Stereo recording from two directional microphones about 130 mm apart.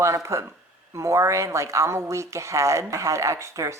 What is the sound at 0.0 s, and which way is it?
Speech, 25° right (ahead or behind).